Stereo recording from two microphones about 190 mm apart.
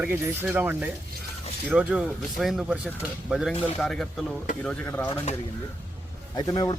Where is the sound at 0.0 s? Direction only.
10° right (ahead or behind); by 5.0 s 5° left (ahead or behind).